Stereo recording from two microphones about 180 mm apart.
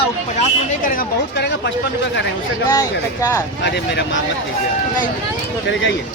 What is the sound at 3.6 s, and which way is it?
Speech, 75° left (ahead or behind).